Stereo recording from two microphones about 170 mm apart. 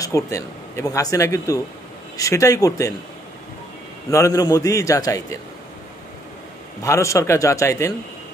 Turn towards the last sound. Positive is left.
turn(degrees=15)  # may be behind; listen again after turning